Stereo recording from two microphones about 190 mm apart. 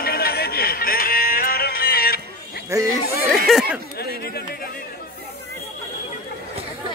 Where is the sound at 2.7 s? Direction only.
15° right (ahead or behind).